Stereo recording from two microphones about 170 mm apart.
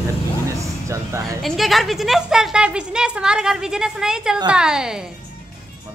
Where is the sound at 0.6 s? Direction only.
15° right (ahead or behind).